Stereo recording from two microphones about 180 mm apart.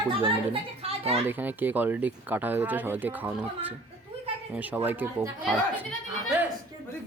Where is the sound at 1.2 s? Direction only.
10° right (ahead or behind).